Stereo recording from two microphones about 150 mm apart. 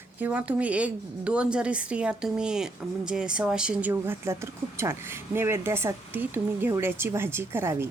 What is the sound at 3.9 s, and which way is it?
Speech, 15° right (ahead or behind).